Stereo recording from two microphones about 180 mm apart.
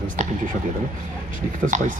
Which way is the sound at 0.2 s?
40° right (ahead or behind).